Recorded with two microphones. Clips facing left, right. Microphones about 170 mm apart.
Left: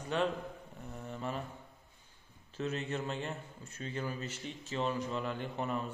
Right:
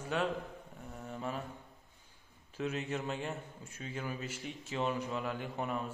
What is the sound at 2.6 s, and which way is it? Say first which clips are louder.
A man's voice: even; 10° right (ahead or behind).